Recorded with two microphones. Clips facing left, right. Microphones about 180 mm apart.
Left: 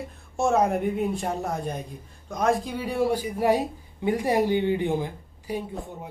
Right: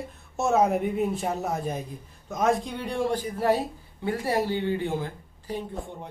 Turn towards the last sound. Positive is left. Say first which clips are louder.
# left 1 dB
turn(degrees=10)  # may be behind; listen again after turning